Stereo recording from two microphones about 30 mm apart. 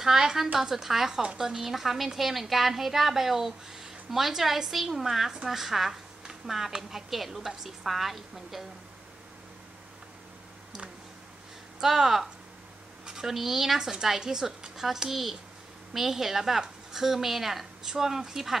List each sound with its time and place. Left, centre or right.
0.0 s a woman's voice: centre
1.7 s a woman's voice: centre
11.8 s speech: centre
13.0 s a sound: right
13.3 s speech: centre
13.7 s a woman's voice: right
15.0 s a woman's voice: centre